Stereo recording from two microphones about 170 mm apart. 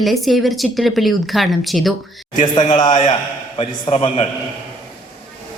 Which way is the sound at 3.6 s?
35° left (ahead or behind).